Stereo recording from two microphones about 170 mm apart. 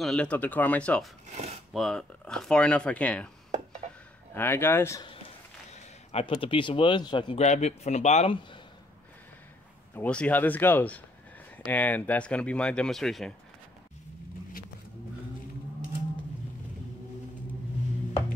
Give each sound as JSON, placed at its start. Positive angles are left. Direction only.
{"t": 0.0, "sound": "speech", "side_deg": 5}
{"t": 4.3, "sound": "speech", "side_deg": 15}
{"t": 5.7, "sound": "speech", "side_deg": 35}
{"t": 7.3, "sound": "speech", "side_deg": 40}
{"t": 9.9, "sound": "speech", "side_deg": 10}